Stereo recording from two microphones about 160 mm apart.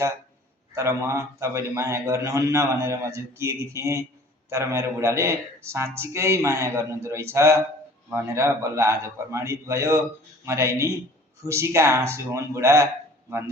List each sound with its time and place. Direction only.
0.7 s a man's voice: 20° right (ahead or behind)